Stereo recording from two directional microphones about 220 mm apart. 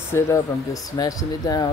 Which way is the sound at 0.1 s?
15° left (ahead or behind).